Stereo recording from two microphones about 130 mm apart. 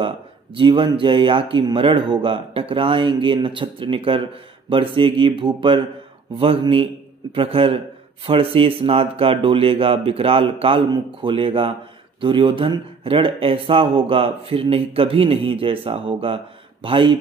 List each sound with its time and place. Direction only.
0.6 s speech: 40° right (ahead or behind)